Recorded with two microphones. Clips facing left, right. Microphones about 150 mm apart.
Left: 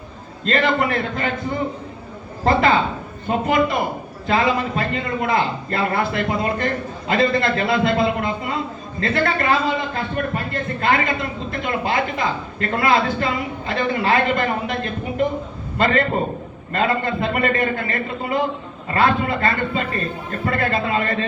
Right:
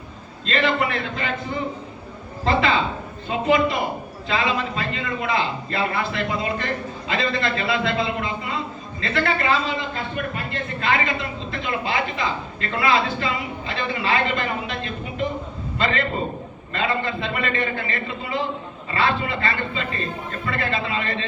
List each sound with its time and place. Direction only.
0.4 s a man's voice: 45° left (ahead or behind)
2.4 s a man's voice: 45° left (ahead or behind)
15.8 s a man's voice: 45° left (ahead or behind)